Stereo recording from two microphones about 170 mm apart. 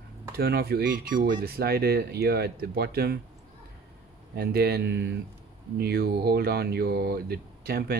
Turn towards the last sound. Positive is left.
turn(degrees=-65)  # may be behind; listen again after turning